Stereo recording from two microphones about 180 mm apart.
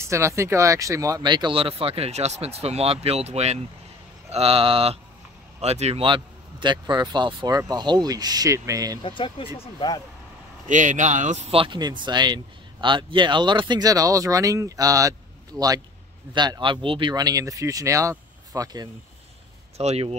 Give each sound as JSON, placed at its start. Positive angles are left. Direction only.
{"t": 0.0, "sound": "speech", "side_deg": -15}
{"t": 9.0, "sound": "speech", "side_deg": 30}
{"t": 10.7, "sound": "speech", "side_deg": -45}
{"t": 11.5, "sound": "speech", "side_deg": -25}
{"t": 16.3, "sound": "speech", "side_deg": -25}
{"t": 19.8, "sound": "speech", "side_deg": -35}